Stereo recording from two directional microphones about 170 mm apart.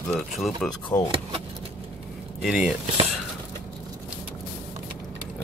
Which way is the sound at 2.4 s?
5° right (ahead or behind).